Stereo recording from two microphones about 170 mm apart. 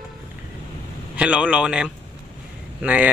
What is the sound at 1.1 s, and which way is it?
Speech, 5° right (ahead or behind).